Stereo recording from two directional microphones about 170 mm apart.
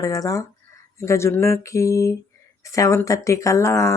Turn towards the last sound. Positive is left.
turn(degrees=15)  # may be behind; listen again after turning